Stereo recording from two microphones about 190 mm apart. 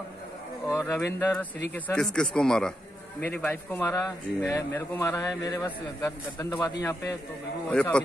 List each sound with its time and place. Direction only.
0.7 s speech: 15° left (ahead or behind)
2.1 s a man's voice: 5° left (ahead or behind)